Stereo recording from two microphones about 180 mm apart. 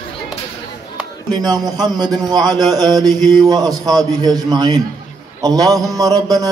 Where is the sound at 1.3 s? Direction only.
20° right (ahead or behind).